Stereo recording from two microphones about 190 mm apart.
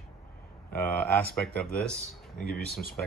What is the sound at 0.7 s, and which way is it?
Speech, 10° left (ahead or behind).